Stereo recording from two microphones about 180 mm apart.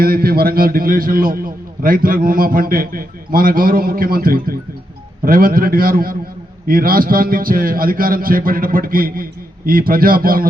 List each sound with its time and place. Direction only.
0.0 s a man's voice: 55° right (ahead or behind)